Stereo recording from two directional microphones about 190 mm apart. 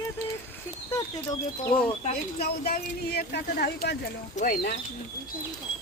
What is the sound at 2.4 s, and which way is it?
Speech, 55° left (ahead or behind).